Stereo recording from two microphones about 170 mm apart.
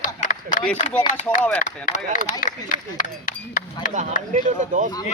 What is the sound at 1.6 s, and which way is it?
Speech, 45° left (ahead or behind).